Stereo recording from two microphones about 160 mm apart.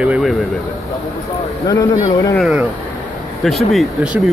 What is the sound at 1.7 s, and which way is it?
Speech, 25° left (ahead or behind).